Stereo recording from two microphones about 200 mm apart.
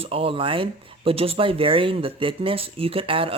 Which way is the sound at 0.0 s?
30° right (ahead or behind).